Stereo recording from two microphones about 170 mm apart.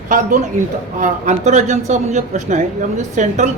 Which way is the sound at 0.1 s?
50° right (ahead or behind).